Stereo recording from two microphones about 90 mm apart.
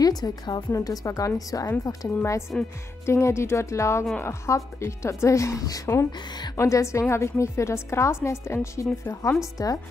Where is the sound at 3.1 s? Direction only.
30° left (ahead or behind).